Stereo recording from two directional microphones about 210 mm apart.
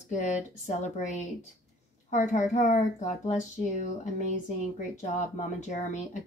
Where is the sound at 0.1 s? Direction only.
35° left (ahead or behind).